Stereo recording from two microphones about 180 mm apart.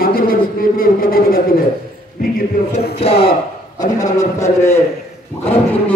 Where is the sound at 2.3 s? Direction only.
55° left (ahead or behind).